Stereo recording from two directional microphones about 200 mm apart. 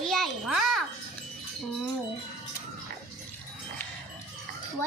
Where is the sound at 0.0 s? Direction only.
Centre (ahead or behind).